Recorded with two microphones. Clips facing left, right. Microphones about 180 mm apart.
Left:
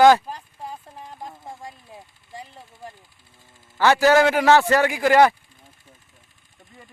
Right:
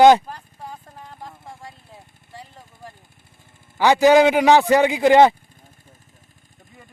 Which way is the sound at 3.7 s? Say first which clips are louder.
Right 3 dB; 15° right (ahead or behind).